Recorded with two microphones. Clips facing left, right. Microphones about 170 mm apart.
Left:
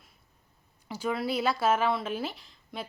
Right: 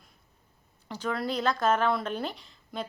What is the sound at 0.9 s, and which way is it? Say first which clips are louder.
Speech: left 1 dB; 10° left (ahead or behind).